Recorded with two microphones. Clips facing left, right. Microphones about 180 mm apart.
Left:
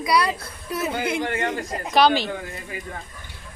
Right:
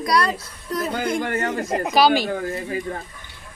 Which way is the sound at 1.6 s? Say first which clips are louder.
Right 7 dB; 50° right (ahead or behind).